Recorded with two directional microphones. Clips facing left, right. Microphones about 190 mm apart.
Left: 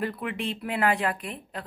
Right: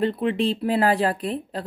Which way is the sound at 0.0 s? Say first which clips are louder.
Right 9 dB; 30° right (ahead or behind).